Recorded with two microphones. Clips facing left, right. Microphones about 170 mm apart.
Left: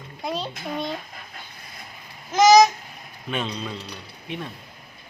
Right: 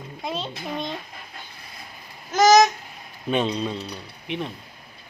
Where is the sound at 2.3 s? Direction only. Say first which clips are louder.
Left 1 dB; centre (ahead or behind).